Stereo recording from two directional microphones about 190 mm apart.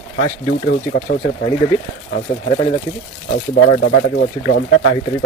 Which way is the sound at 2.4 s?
30° left (ahead or behind).